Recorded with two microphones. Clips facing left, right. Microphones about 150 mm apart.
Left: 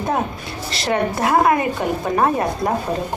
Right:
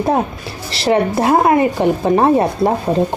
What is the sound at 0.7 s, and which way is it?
Speech, 30° right (ahead or behind).